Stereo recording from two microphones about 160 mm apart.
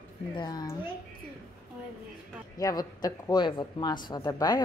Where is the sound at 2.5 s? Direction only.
25° left (ahead or behind).